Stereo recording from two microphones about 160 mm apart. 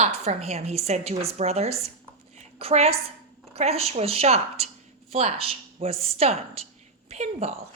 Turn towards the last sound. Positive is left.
turn(degrees=-40)  # may be behind; listen again after turning